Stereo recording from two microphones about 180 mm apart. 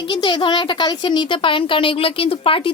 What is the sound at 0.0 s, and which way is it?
Speech, 25° left (ahead or behind).